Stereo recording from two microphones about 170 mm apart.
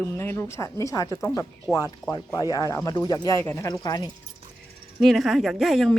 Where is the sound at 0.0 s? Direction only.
15° left (ahead or behind).